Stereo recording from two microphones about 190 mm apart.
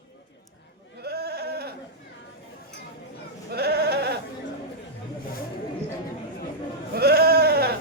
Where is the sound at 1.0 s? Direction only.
55° right (ahead or behind).